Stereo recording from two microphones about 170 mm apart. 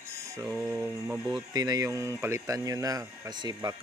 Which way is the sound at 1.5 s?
20° right (ahead or behind).